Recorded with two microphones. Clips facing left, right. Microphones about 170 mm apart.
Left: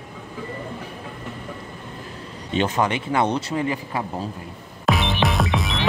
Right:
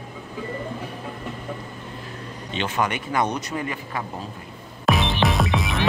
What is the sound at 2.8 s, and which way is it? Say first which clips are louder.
Speech: right 1 dB; 25° left (ahead or behind).